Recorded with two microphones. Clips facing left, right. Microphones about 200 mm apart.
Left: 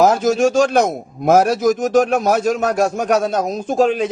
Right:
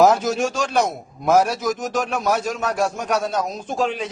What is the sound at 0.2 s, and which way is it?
A man's voice, 45° left (ahead or behind).